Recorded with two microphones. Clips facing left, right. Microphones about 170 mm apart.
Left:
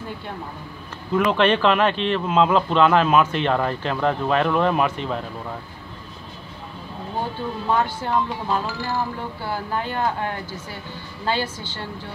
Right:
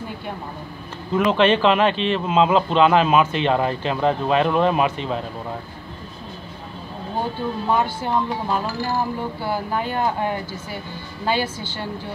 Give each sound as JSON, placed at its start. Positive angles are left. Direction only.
{"t": 1.1, "sound": "speech", "side_deg": -20}
{"t": 7.7, "sound": "speech", "side_deg": -10}